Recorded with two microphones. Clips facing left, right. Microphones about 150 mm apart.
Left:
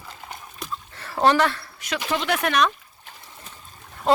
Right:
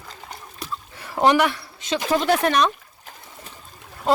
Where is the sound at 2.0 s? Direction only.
35° right (ahead or behind).